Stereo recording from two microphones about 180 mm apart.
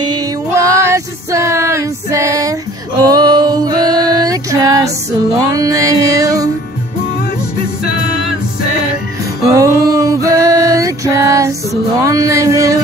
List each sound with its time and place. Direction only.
0.0 s music: 20° right (ahead or behind)
9.5 s music: 20° right (ahead or behind)